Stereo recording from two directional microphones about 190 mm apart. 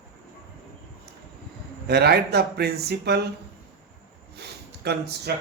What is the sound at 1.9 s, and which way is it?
Speech, 60° right (ahead or behind).